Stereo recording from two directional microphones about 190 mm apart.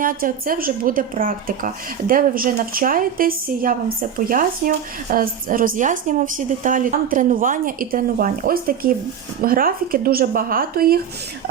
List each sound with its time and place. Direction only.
0.0 s speech: 45° right (ahead or behind)